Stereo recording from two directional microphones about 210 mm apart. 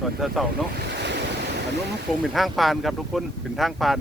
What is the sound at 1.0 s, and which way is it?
Waves, 55° right (ahead or behind).